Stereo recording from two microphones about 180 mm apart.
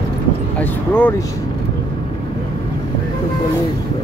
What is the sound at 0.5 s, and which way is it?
Speech, 10° left (ahead or behind).